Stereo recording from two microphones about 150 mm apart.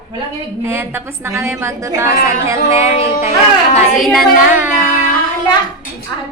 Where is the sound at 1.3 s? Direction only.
20° right (ahead or behind).